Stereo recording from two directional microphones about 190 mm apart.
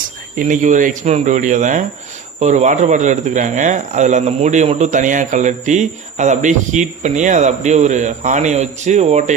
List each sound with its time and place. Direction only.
0.3 s speech: 45° right (ahead or behind)